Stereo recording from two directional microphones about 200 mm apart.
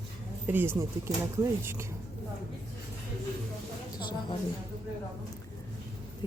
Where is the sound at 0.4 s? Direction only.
10° right (ahead or behind).